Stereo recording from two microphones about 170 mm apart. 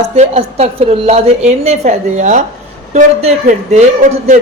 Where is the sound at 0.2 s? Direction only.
35° right (ahead or behind).